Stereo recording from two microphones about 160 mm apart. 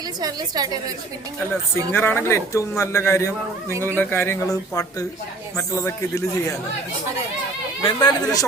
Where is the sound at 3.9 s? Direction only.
15° left (ahead or behind).